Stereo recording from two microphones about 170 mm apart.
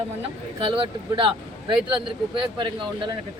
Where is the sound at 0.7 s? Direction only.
30° right (ahead or behind).